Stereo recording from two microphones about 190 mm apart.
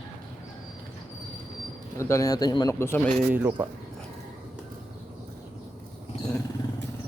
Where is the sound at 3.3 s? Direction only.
10° right (ahead or behind).